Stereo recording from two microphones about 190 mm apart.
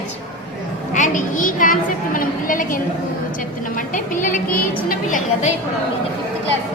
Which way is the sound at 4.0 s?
45° left (ahead or behind).